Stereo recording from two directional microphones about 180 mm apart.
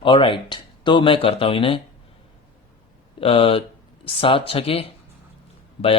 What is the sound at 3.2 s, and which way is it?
Speech, 30° left (ahead or behind).